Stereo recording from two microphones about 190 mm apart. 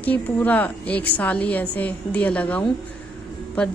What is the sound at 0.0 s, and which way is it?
A woman's voice, 10° left (ahead or behind).